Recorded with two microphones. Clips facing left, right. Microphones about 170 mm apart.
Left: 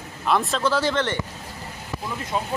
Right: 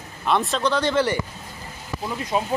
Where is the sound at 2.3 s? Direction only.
20° right (ahead or behind).